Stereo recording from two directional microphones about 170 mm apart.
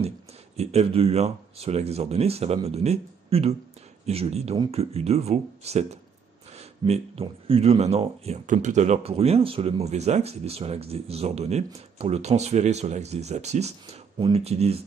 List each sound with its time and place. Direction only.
0.6 s speech: 40° right (ahead or behind)